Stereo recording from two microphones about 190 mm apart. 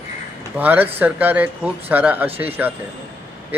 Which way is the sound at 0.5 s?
10° right (ahead or behind).